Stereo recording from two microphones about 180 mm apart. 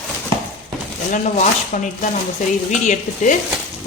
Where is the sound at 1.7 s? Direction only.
45° left (ahead or behind).